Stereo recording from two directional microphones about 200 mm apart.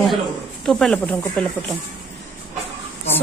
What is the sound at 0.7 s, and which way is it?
Speech, 5° left (ahead or behind).